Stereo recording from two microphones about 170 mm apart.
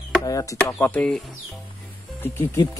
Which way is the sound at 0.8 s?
10° left (ahead or behind).